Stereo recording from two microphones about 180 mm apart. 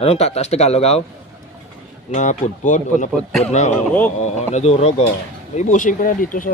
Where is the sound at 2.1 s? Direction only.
40° left (ahead or behind).